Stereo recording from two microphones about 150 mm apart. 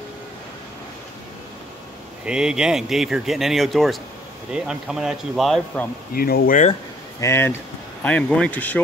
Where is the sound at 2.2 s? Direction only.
5° right (ahead or behind).